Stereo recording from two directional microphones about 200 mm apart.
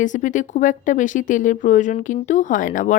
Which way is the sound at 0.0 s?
40° left (ahead or behind).